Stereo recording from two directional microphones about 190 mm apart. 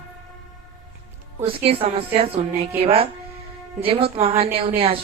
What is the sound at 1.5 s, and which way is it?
A woman's voice, 30° right (ahead or behind).